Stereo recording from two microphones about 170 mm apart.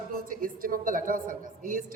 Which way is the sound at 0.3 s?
55° right (ahead or behind).